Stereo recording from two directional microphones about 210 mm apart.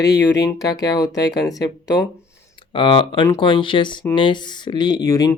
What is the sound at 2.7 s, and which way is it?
Speech, 25° left (ahead or behind).